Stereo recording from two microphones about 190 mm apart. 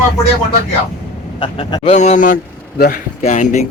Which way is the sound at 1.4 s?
25° left (ahead or behind).